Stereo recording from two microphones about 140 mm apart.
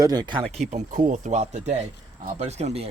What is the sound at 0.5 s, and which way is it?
Speech, 55° right (ahead or behind).